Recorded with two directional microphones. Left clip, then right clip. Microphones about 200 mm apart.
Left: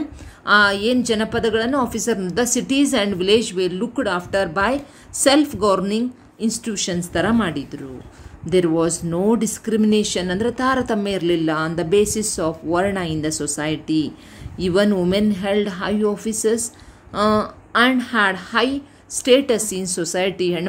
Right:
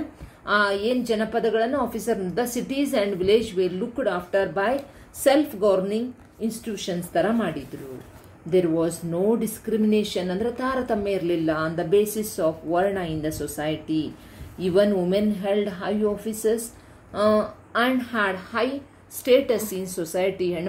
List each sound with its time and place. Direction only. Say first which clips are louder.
0.5 s speech: left 6 dB; 45° left (ahead or behind)